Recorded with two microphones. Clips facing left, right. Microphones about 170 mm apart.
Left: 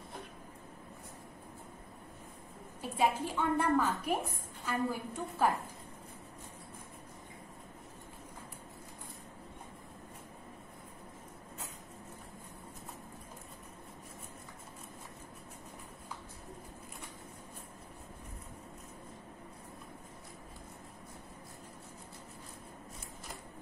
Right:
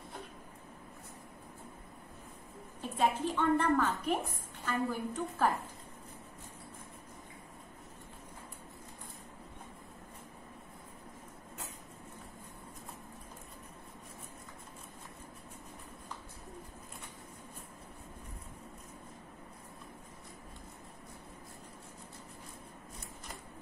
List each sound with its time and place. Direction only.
2.8 s a woman's voice: 10° left (ahead or behind)